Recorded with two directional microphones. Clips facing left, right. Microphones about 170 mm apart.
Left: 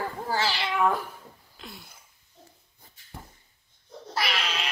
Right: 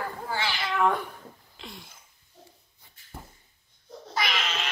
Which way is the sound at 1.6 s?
5° left (ahead or behind).